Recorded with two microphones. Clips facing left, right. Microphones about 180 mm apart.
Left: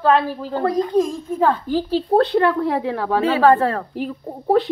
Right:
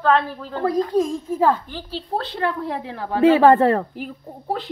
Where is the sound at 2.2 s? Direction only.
75° left (ahead or behind).